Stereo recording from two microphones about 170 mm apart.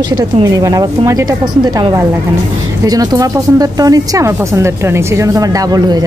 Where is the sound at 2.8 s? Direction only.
20° right (ahead or behind).